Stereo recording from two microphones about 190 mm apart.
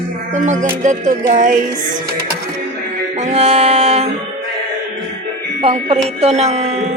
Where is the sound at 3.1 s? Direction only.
35° right (ahead or behind).